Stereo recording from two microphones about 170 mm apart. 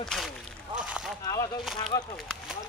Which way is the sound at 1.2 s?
20° left (ahead or behind).